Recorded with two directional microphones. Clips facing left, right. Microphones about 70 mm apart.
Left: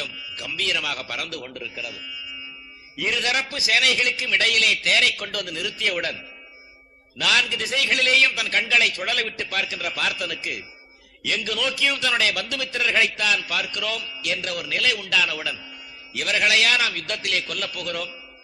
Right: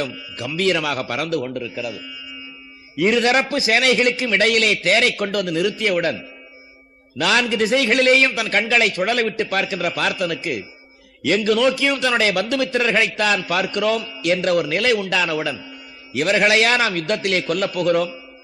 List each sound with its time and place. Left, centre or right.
0.0 s a man's voice: right
5.8 s a man's voice: right
7.2 s a man's voice: right
11.7 s a man's voice: right